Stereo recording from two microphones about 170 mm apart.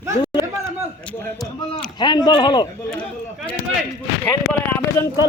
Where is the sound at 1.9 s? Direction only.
25° left (ahead or behind).